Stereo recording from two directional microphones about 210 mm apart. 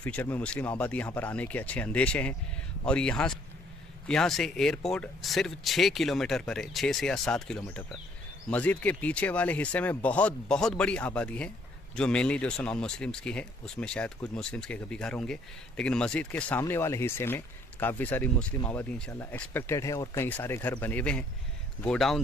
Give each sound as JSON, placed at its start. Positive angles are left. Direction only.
{"t": 0.0, "sound": "speech", "side_deg": 10}